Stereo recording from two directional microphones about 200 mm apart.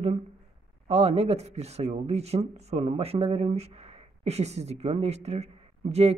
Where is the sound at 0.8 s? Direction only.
30° right (ahead or behind).